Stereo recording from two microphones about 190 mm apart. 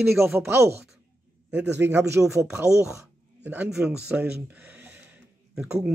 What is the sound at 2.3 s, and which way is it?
Speech, 15° right (ahead or behind).